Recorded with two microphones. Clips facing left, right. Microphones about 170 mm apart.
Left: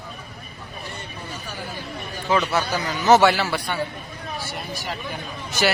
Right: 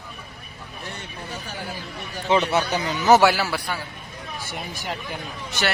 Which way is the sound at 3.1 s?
5° right (ahead or behind).